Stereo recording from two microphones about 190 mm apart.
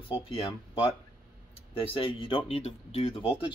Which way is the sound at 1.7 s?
25° left (ahead or behind).